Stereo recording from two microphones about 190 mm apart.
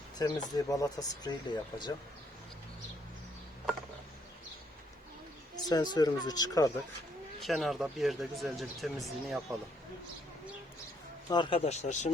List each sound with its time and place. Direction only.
0.2 s speech: 20° left (ahead or behind)
5.6 s speech: 20° left (ahead or behind)
7.4 s speech: centre (ahead or behind)
11.3 s speech: 25° left (ahead or behind)